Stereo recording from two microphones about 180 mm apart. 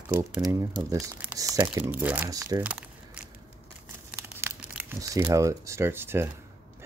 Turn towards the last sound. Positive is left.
turn(degrees=-10)  # may be behind; listen again after turning